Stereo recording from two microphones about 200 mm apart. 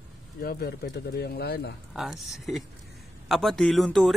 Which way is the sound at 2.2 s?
Centre (ahead or behind).